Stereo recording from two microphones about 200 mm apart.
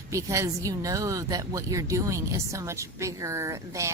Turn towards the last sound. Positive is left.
turn(degrees=-15)  # may be behind; listen again after turning